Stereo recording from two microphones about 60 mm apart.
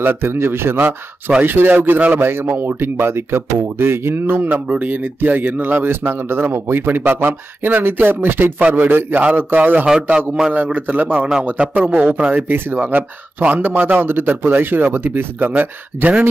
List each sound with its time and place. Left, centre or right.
0.0 s speech: right
10.1 s a man's voice: centre
10.5 s a man's voice: right
12.4 s speech: right